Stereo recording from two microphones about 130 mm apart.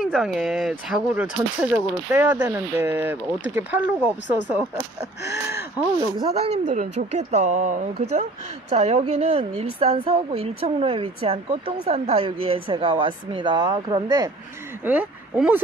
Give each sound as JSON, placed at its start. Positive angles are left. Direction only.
{"t": 0.1, "sound": "speech", "side_deg": -5}
{"t": 6.3, "sound": "speech", "side_deg": -55}
{"t": 14.9, "sound": "speech", "side_deg": -10}